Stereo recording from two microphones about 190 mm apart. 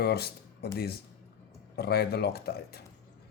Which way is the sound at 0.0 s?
55° left (ahead or behind).